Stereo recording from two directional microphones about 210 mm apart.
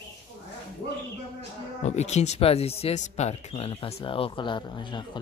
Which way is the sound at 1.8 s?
35° left (ahead or behind).